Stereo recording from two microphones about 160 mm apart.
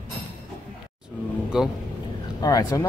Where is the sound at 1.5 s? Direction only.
5° right (ahead or behind).